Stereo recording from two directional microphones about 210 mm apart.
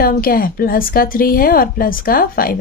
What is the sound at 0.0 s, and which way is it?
Speech, 45° left (ahead or behind).